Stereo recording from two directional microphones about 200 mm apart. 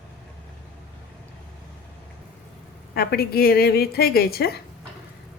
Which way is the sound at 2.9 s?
50° left (ahead or behind).